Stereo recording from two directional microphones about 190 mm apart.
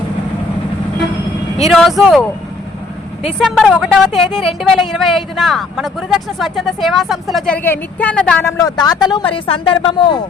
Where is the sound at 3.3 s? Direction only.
Centre (ahead or behind).